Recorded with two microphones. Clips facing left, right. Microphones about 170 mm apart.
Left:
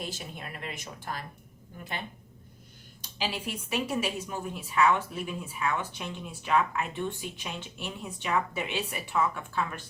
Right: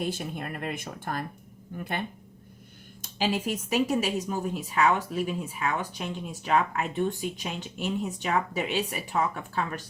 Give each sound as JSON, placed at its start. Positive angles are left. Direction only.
{"t": 0.0, "sound": "speech", "side_deg": -55}
{"t": 3.0, "sound": "speech", "side_deg": -45}